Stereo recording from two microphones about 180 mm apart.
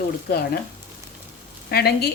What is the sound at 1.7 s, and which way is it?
Speech, 60° left (ahead or behind).